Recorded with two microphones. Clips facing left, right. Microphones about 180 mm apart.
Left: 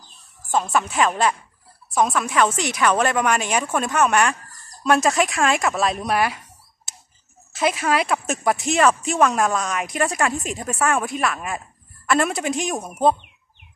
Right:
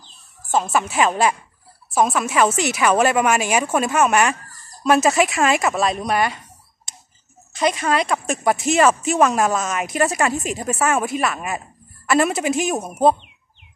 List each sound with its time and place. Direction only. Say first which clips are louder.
0.5 s a woman's voice: right 1 dB; 5° right (ahead or behind)
7.5 s a woman's voice: right 1 dB; 5° left (ahead or behind)